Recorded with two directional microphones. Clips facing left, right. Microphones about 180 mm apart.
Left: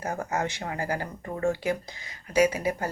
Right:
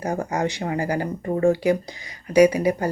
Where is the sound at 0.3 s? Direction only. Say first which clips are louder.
Right 5 dB; 15° right (ahead or behind).